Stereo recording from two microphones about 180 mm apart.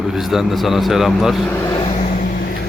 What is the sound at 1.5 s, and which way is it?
Vehicle, 20° left (ahead or behind).